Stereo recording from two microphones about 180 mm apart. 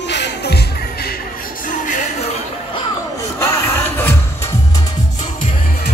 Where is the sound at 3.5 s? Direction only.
10° left (ahead or behind).